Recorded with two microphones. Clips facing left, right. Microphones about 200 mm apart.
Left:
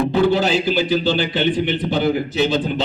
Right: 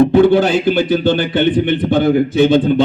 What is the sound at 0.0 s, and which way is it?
A man's voice, 55° right (ahead or behind).